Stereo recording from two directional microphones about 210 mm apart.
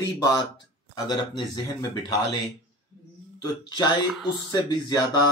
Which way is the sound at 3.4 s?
20° left (ahead or behind).